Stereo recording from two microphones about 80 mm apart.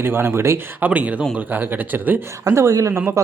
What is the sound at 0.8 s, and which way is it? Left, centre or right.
Speech, centre.